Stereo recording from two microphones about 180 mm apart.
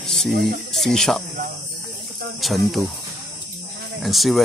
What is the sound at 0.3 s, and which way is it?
Speech, 60° right (ahead or behind).